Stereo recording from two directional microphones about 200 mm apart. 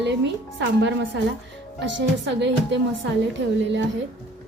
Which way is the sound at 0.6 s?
65° right (ahead or behind).